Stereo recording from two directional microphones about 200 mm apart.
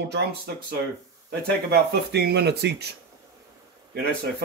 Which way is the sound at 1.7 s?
55° right (ahead or behind).